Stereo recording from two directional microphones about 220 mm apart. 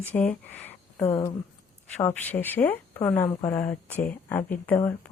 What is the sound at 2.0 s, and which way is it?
Speech, 5° left (ahead or behind).